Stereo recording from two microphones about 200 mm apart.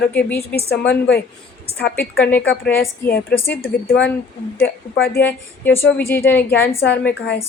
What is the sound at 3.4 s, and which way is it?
Speech, 10° left (ahead or behind).